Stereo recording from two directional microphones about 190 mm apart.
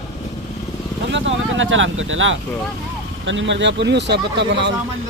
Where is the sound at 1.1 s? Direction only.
75° right (ahead or behind).